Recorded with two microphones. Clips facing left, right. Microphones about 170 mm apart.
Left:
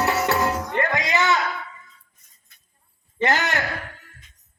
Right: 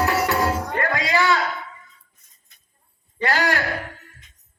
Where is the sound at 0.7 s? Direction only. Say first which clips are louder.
Even; 20° left (ahead or behind).